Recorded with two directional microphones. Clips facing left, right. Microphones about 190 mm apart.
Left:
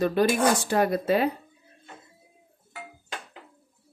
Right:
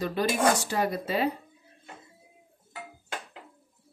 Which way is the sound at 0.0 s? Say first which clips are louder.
Left 3 dB; 55° left (ahead or behind).